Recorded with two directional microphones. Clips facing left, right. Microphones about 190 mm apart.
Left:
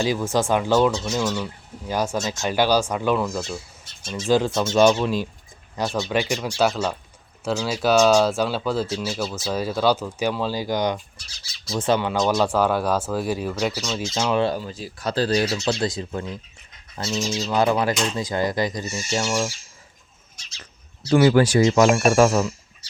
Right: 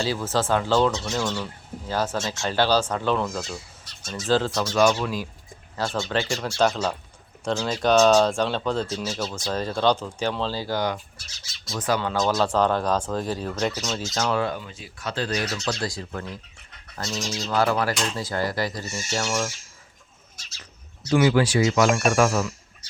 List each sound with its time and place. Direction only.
0.0 s speech: 15° left (ahead or behind)
2.1 s speech: 20° left (ahead or behind)
4.3 s speech: 15° left (ahead or behind)
4.5 s speech: 25° left (ahead or behind)
11.2 s speech: centre (ahead or behind)
11.8 s speech: 20° left (ahead or behind)
14.3 s speech: 30° left (ahead or behind)
17.0 s speech: 5° left (ahead or behind)
17.5 s speech: 20° left (ahead or behind)
21.0 s speech: 35° left (ahead or behind)